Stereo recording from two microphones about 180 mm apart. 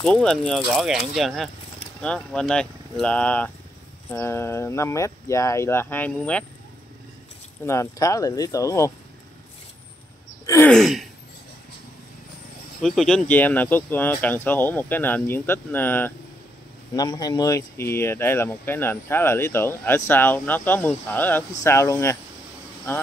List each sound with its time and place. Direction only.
0.0 s speech: 5° left (ahead or behind)
7.6 s speech: 15° left (ahead or behind)
10.4 s a sound: 15° left (ahead or behind)
10.7 s speech: centre (ahead or behind)
12.8 s speech: centre (ahead or behind)